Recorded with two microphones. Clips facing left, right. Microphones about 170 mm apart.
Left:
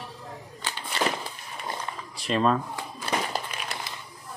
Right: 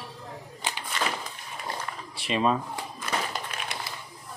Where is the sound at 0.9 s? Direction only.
30° left (ahead or behind).